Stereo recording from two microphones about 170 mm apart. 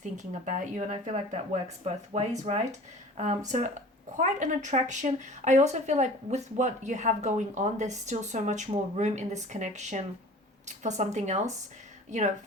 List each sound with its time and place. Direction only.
0.2 s speech: 45° right (ahead or behind)